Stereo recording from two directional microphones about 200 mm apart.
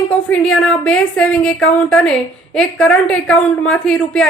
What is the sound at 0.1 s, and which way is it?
A woman's voice, 5° left (ahead or behind).